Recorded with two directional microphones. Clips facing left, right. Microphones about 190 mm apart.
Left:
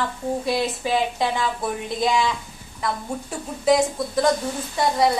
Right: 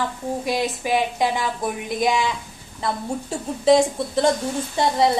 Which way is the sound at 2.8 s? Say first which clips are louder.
Right 2 dB; 30° right (ahead or behind).